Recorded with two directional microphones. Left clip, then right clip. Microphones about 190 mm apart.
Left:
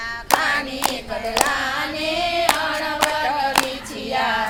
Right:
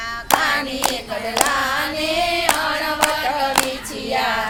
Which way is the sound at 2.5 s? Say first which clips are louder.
Right 1 dB; 10° left (ahead or behind).